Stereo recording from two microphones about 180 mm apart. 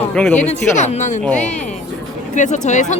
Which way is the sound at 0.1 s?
5° left (ahead or behind).